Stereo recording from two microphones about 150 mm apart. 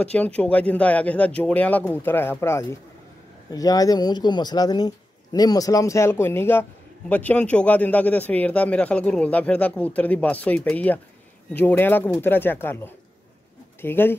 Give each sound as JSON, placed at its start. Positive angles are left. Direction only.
{"t": 0.0, "sound": "speech", "side_deg": 10}